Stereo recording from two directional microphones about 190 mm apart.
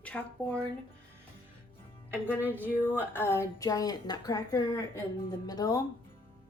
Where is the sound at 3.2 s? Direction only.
15° left (ahead or behind).